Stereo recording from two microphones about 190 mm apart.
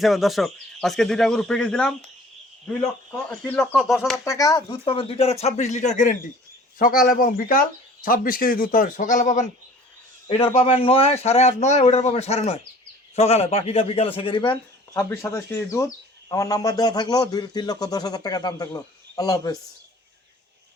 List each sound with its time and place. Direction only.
0.0 s speech: centre (ahead or behind)
3.2 s speech: 10° left (ahead or behind)
4.3 s a man's voice: 20° left (ahead or behind)
14.5 s a man's voice: 10° left (ahead or behind)